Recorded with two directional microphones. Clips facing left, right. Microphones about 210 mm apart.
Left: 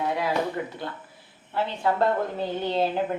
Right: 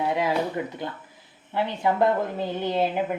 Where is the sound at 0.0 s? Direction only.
20° right (ahead or behind).